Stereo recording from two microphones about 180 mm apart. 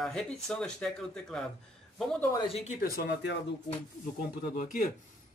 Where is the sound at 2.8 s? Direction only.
55° left (ahead or behind).